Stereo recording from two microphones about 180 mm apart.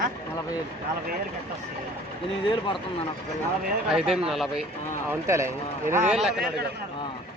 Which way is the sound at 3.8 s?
5° right (ahead or behind).